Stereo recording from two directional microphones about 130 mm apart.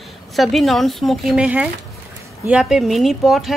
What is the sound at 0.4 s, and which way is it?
Speech, centre (ahead or behind).